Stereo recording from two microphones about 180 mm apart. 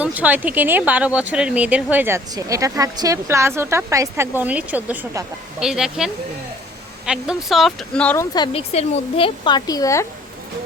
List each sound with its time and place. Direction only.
0.0 s speech: 10° right (ahead or behind); by 8.4 s 20° left (ahead or behind)
8.5 s a woman's voice: 35° left (ahead or behind); by 10.1 s 15° left (ahead or behind)